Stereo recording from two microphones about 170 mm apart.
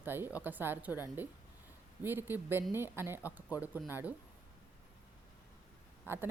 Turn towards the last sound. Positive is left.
turn(degrees=-15)  # may be behind; listen again after turning